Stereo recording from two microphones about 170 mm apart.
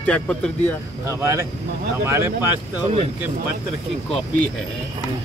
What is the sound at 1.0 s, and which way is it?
A man's voice, 15° right (ahead or behind).